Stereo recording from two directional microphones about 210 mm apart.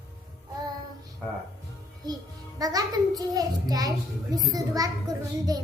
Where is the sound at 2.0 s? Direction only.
20° right (ahead or behind).